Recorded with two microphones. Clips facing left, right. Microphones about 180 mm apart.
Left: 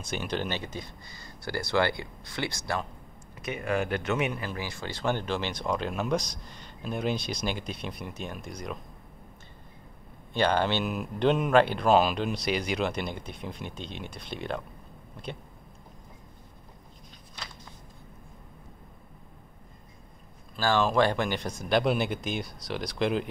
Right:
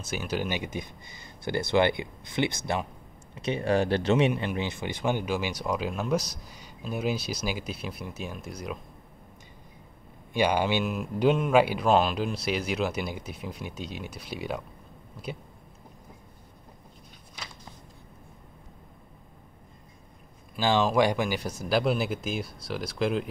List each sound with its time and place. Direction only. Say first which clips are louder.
0.0 s speech: right 1 dB; 5° right (ahead or behind); by 4.3 s 30° right (ahead or behind)
4.3 s speech: right 5 dB; 20° right (ahead or behind); by 8.7 s 5° right (ahead or behind)
10.3 s speech: right 1 dB; 10° right (ahead or behind)
11.9 s speech: left 2 dB; 5° left (ahead or behind)
20.5 s speech: right 1 dB; 15° right (ahead or behind)